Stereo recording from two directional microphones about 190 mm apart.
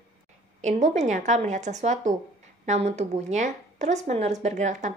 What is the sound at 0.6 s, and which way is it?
A woman's voice, 40° right (ahead or behind).